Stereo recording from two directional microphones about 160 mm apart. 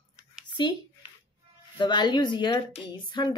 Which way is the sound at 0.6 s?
30° left (ahead or behind).